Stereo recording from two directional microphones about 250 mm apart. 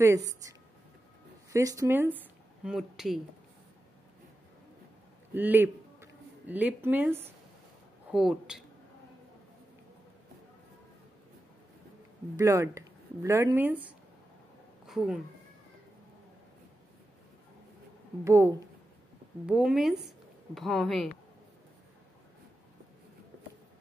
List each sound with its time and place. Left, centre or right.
0.0 s speech: centre
5.3 s speech: centre
12.4 s speech: centre
18.2 s speech: centre